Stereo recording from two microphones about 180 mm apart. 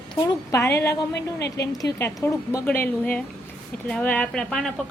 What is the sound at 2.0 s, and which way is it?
A woman's voice, 15° left (ahead or behind).